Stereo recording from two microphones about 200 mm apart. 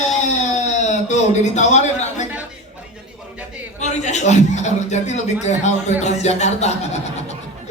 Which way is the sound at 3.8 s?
35° left (ahead or behind).